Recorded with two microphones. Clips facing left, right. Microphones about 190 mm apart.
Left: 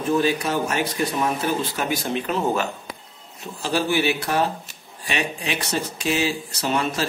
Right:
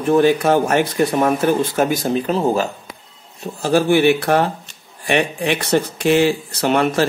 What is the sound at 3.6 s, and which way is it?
Speech, 50° right (ahead or behind).